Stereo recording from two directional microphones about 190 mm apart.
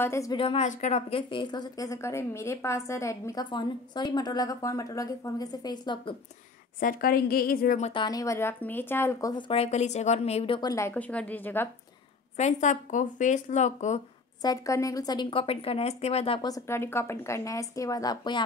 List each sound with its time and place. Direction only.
0.0 s speech: 15° left (ahead or behind)
0.4 s a woman's voice: 30° left (ahead or behind)
0.7 s a woman's voice: 40° left (ahead or behind); by 6.1 s 20° left (ahead or behind)
6.8 s a woman's voice: 50° left (ahead or behind)
7.8 s speech: 25° left (ahead or behind)
12.4 s speech: 40° left (ahead or behind)
14.4 s a woman's voice: 15° left (ahead or behind)